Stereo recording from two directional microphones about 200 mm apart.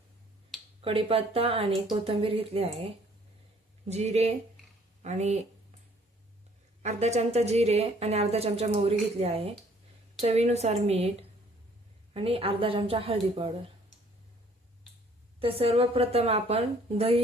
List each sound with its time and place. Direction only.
0.8 s a woman's voice: 30° right (ahead or behind)
6.8 s a woman's voice: 35° right (ahead or behind)
15.4 s speech: 30° right (ahead or behind)